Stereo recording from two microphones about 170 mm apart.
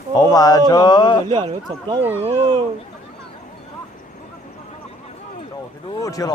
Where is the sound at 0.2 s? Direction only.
20° left (ahead or behind).